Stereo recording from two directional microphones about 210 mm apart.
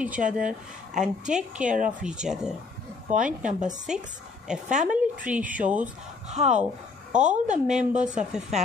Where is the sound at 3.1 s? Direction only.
35° right (ahead or behind).